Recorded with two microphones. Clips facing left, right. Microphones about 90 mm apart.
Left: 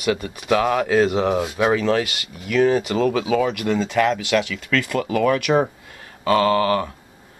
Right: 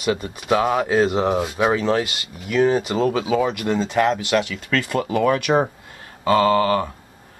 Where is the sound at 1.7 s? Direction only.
25° right (ahead or behind).